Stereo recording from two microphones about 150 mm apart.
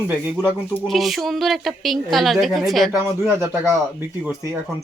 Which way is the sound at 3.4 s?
15° right (ahead or behind).